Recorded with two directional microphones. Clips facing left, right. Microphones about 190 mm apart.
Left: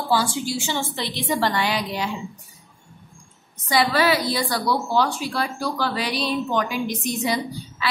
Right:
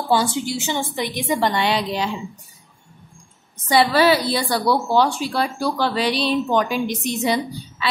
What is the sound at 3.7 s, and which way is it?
A woman's voice, 30° right (ahead or behind).